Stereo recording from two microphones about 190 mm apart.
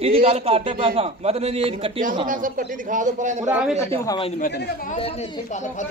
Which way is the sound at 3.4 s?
10° right (ahead or behind).